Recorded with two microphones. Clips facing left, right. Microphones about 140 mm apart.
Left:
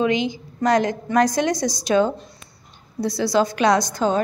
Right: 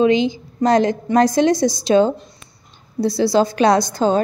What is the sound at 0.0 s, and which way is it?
A woman's voice, 30° right (ahead or behind).